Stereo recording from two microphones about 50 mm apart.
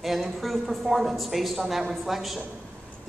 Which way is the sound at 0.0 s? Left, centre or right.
Centre.